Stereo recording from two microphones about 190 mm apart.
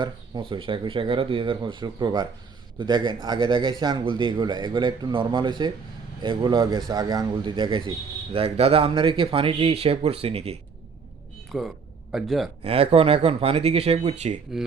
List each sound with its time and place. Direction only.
0.0 s a man's voice: 25° right (ahead or behind)
11.5 s a man's voice: 5° right (ahead or behind)
12.6 s speech: 30° right (ahead or behind)